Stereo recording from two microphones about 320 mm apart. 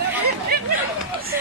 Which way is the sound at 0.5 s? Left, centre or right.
Right.